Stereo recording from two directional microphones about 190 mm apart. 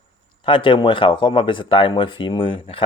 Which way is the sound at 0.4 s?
25° left (ahead or behind).